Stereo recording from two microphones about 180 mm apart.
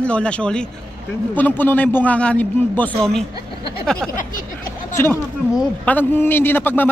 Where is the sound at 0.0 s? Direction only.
5° left (ahead or behind).